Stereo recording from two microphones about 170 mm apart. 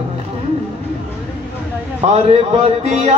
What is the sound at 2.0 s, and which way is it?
A man's voice, 35° right (ahead or behind).